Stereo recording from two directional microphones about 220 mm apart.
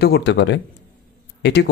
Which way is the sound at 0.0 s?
50° left (ahead or behind).